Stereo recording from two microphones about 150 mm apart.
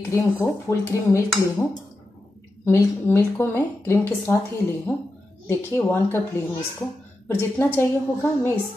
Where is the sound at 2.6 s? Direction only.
15° left (ahead or behind).